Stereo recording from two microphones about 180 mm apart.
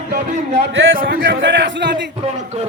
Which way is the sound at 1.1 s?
75° right (ahead or behind).